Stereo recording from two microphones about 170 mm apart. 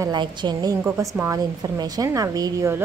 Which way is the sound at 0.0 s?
25° right (ahead or behind).